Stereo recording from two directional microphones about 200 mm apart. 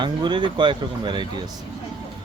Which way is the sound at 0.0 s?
20° right (ahead or behind).